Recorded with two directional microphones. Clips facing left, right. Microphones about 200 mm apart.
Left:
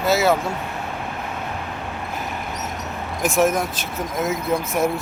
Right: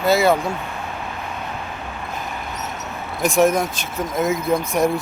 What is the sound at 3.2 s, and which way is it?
Speech, 5° left (ahead or behind).